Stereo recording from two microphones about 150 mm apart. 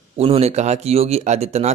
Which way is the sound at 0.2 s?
45° right (ahead or behind).